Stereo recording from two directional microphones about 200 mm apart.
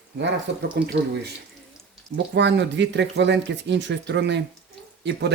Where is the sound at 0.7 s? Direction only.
55° right (ahead or behind).